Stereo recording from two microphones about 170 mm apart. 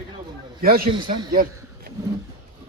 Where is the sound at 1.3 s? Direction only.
60° right (ahead or behind).